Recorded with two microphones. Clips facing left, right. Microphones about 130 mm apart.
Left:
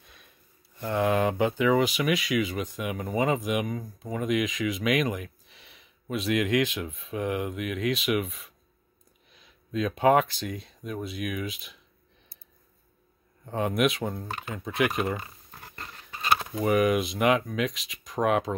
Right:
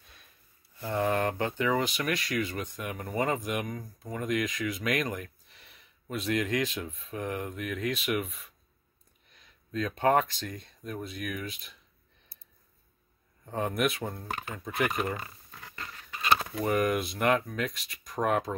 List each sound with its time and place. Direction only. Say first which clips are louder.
0.0 s sniff: left 3 dB; centre (ahead or behind)
0.9 s speech: left 4 dB; 5° left (ahead or behind)
7.8 s speech: left 5 dB; 90° left
8.1 s speech: left 4 dB; 5° left (ahead or behind)
9.7 s speech: left 4 dB; 10° left (ahead or behind)
13.5 s speech: left 4 dB; 5° left (ahead or behind)
16.6 s speech: left 6 dB; 5° left (ahead or behind)